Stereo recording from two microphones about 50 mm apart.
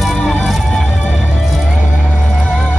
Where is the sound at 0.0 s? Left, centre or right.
Centre.